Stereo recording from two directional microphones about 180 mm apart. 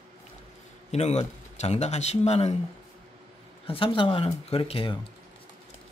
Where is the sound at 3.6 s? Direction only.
30° left (ahead or behind).